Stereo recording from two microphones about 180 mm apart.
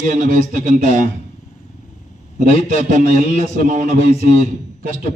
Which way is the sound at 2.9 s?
45° right (ahead or behind).